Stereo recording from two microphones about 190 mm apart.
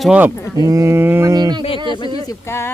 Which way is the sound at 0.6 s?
15° right (ahead or behind).